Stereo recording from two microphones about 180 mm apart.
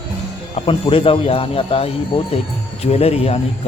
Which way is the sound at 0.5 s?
30° left (ahead or behind).